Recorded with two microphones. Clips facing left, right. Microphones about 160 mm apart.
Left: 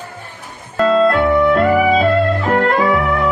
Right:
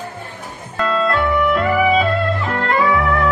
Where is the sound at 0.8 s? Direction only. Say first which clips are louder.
Left 6 dB; 45° left (ahead or behind).